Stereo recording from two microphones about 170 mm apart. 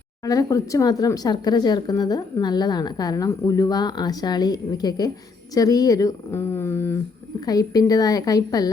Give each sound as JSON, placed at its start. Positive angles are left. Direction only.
{"t": 0.3, "sound": "speech", "side_deg": 20}